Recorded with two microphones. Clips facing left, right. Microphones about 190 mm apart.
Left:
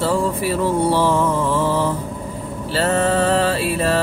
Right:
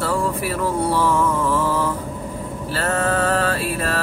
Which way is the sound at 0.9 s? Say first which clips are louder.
Left 2 dB; 25° left (ahead or behind).